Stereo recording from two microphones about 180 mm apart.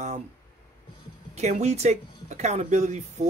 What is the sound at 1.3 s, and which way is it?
Speech, 40° right (ahead or behind).